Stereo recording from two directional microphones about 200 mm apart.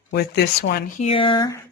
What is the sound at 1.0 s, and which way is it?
Speech, 25° left (ahead or behind).